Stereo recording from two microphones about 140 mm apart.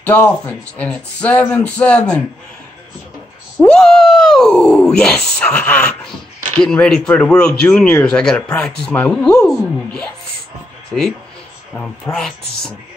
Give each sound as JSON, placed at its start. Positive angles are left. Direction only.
{"t": 0.0, "sound": "speech", "side_deg": 10}
{"t": 3.6, "sound": "speech", "side_deg": 5}
{"t": 8.4, "sound": "speech", "side_deg": 20}
{"t": 8.6, "sound": "speech", "side_deg": 5}
{"t": 11.7, "sound": "speech", "side_deg": 5}